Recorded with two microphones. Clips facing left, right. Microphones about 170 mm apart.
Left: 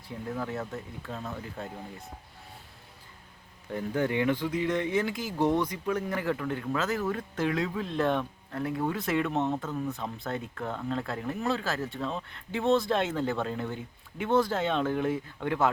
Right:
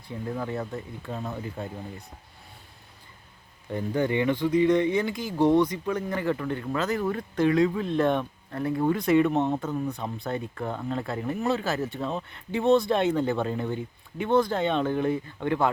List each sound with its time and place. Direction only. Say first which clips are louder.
0.1 s speech: right 3 dB; centre (ahead or behind)
3.7 s speech: right 3 dB; centre (ahead or behind)
9.5 s speech: right 3 dB; 15° right (ahead or behind)
9.9 s speech: right 3 dB; centre (ahead or behind)